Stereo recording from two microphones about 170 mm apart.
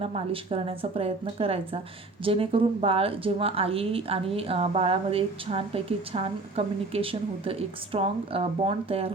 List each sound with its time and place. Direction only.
0.0 s speech: 35° right (ahead or behind)